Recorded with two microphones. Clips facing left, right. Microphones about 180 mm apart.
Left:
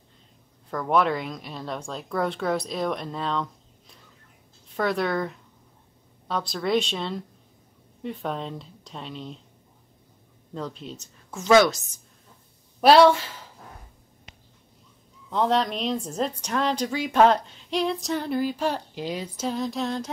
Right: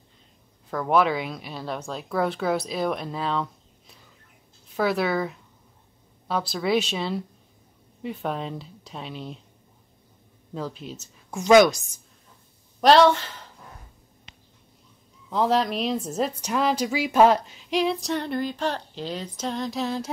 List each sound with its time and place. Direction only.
0.7 s a woman's voice: centre (ahead or behind)
4.7 s a woman's voice: 5° right (ahead or behind)
10.5 s a woman's voice: 5° right (ahead or behind)
11.2 s a woman's voice: 15° right (ahead or behind)
12.8 s speech: 10° left (ahead or behind)
15.2 s a woman's voice: 5° right (ahead or behind)